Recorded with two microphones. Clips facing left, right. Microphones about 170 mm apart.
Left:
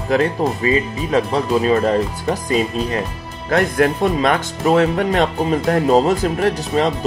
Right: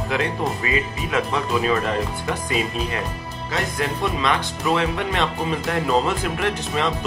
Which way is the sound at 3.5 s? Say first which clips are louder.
Left 10 dB; 55° left (ahead or behind).